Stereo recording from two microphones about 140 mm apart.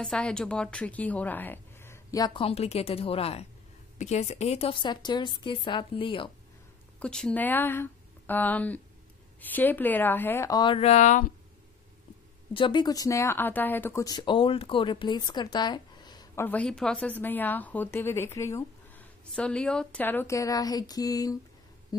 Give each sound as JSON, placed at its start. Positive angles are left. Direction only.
{"t": 0.0, "sound": "a woman's voice", "side_deg": 5}
{"t": 2.4, "sound": "a woman's voice", "side_deg": 45}
{"t": 7.0, "sound": "a woman's voice", "side_deg": 5}
{"t": 10.6, "sound": "a woman's voice", "side_deg": 35}
{"t": 10.9, "sound": "speech", "side_deg": 60}
{"t": 12.5, "sound": "a woman's voice", "side_deg": 35}
{"t": 14.0, "sound": "a woman's voice", "side_deg": 35}
{"t": 16.3, "sound": "a woman's voice", "side_deg": 10}
{"t": 19.3, "sound": "a woman's voice", "side_deg": 5}